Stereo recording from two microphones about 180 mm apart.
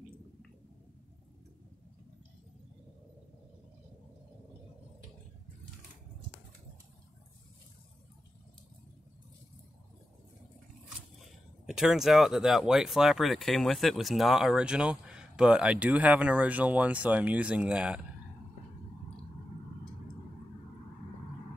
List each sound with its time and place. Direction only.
11.1 s speech: centre (ahead or behind)